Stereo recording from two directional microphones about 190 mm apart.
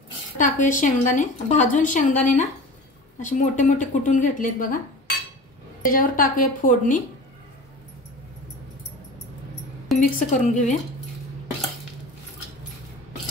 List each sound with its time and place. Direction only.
0.4 s a woman's voice: 40° left (ahead or behind)
5.8 s a woman's voice: 45° left (ahead or behind)
9.9 s speech: 40° left (ahead or behind)